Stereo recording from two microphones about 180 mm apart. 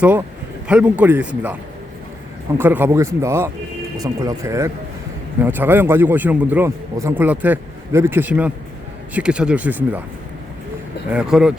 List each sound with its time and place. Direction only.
0.0 s a man's voice: 10° right (ahead or behind)
2.6 s a man's voice: 10° right (ahead or behind)
11.1 s speech: 5° right (ahead or behind)